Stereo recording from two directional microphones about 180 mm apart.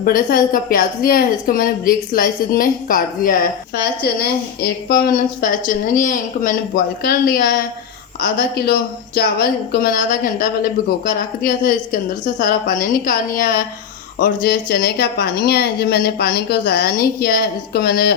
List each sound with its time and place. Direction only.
0.0 s a woman's voice: 55° left (ahead or behind)